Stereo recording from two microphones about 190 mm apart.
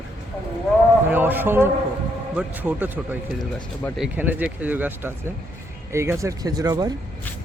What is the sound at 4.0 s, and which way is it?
A man's voice, 10° right (ahead or behind).